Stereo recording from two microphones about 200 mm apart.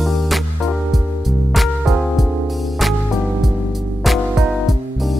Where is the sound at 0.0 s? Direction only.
Centre (ahead or behind).